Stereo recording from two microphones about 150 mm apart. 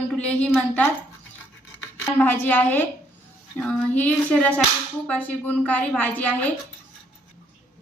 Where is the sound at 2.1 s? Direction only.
15° left (ahead or behind).